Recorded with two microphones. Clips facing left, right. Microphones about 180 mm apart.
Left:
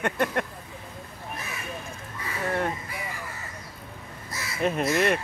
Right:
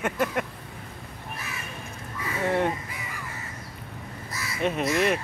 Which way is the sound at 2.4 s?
20° right (ahead or behind).